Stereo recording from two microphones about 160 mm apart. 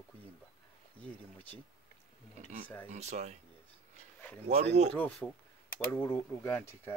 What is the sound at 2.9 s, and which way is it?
Speech, 45° right (ahead or behind).